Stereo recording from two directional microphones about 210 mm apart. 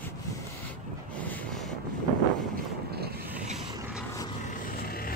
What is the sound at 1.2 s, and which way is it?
Wind noise, 5° left (ahead or behind).